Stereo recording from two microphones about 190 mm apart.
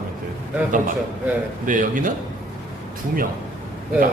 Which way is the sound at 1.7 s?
45° right (ahead or behind).